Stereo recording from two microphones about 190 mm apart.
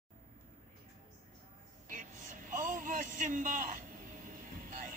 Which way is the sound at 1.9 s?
45° right (ahead or behind).